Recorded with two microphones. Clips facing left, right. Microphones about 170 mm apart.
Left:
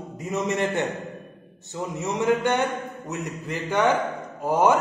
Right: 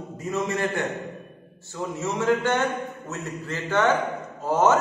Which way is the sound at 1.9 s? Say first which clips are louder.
Left 1 dB; 15° left (ahead or behind).